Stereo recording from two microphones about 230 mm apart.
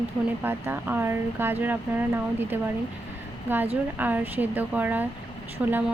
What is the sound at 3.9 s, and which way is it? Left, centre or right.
Speech, centre.